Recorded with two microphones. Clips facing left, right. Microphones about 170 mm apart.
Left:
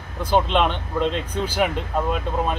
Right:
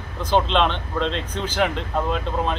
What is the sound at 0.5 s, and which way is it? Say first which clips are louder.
Speech: even; 10° left (ahead or behind).